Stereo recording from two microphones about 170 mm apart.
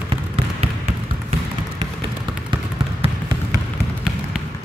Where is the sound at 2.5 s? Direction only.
30° right (ahead or behind).